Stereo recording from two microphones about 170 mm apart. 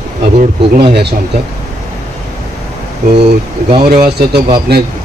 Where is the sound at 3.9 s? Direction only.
65° right (ahead or behind).